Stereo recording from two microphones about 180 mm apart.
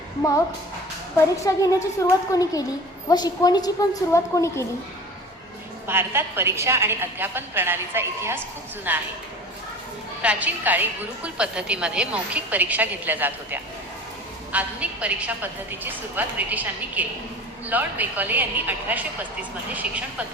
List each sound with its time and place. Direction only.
1.5 s a woman's voice: 20° left (ahead or behind)
5.9 s a woman's voice: 15° right (ahead or behind)
10.2 s a woman's voice: 10° right (ahead or behind)